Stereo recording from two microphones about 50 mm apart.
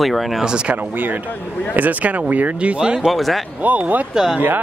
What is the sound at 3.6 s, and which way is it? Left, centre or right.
Speech, right.